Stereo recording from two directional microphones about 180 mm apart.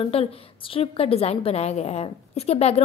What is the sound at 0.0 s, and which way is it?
A woman's voice, 30° left (ahead or behind).